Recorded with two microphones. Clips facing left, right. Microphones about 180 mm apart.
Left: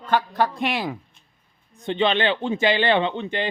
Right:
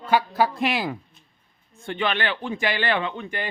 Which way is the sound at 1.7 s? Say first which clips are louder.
Left 5 dB; 20° left (ahead or behind).